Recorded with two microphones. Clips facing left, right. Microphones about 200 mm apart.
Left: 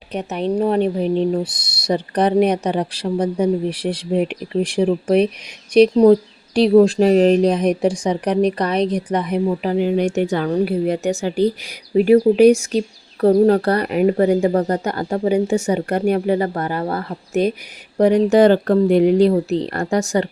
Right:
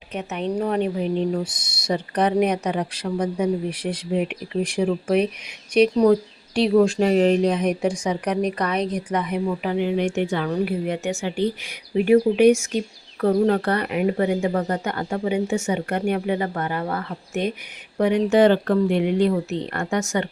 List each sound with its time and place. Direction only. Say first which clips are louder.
0.1 s speech: left 5 dB; 35° left (ahead or behind)